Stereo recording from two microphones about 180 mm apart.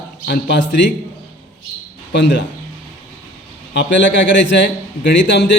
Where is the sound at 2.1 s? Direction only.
75° left (ahead or behind).